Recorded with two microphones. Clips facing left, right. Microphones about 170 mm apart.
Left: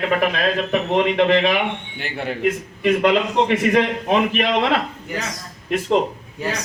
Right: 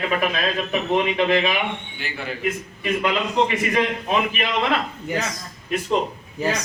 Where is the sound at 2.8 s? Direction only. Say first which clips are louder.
Left 6 dB; 75° left (ahead or behind).